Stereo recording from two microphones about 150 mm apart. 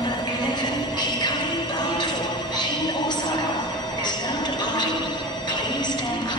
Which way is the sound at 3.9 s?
30° left (ahead or behind).